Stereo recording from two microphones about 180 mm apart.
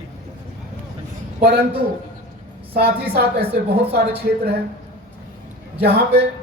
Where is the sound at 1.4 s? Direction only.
60° right (ahead or behind).